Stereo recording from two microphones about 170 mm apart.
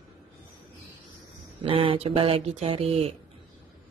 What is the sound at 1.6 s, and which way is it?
Speech, 30° right (ahead or behind).